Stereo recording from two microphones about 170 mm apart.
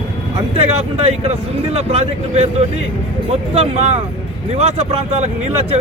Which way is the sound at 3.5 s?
40° right (ahead or behind).